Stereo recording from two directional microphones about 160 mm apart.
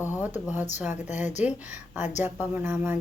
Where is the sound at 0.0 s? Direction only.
10° right (ahead or behind).